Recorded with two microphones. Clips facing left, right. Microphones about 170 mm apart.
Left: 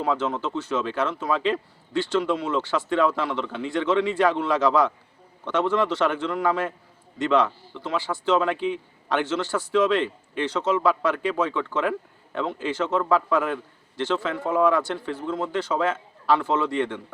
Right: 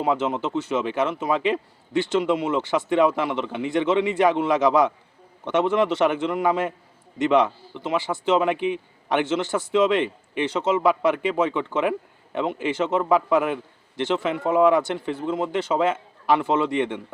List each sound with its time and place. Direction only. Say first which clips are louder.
0.0 s a man's voice: right 2 dB; 15° right (ahead or behind)